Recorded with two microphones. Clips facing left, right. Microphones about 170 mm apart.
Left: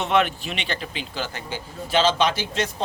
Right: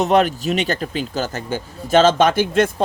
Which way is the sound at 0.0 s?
40° right (ahead or behind).